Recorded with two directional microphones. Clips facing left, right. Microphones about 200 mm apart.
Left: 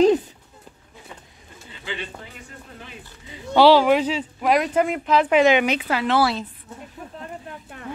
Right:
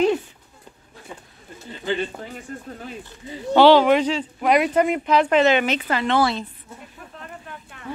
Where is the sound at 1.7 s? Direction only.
45° right (ahead or behind).